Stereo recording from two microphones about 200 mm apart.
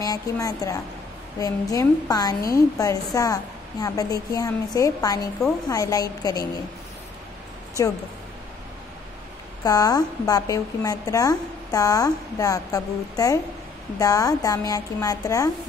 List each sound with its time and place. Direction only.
0.0 s a woman's voice: 20° left (ahead or behind)
9.6 s a woman's voice: 20° left (ahead or behind)